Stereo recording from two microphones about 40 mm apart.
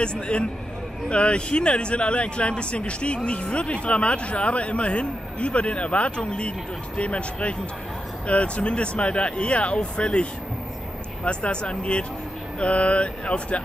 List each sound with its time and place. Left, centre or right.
0.0 s speech: left
11.2 s speech: left